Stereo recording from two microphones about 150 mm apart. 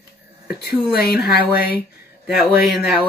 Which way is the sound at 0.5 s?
90° left.